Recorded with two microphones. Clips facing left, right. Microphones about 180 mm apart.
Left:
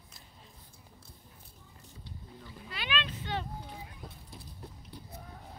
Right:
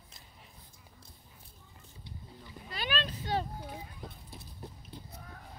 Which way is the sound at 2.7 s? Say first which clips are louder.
Right 1 dB; 40° right (ahead or behind).